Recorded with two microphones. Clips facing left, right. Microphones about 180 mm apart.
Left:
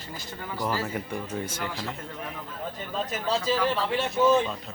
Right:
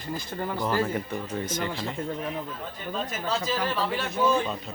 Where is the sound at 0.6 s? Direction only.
5° left (ahead or behind).